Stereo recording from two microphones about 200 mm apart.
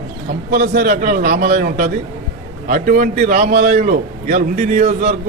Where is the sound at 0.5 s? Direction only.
50° right (ahead or behind).